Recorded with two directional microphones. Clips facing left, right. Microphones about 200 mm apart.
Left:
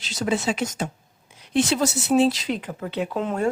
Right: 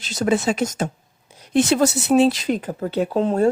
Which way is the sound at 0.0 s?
50° right (ahead or behind).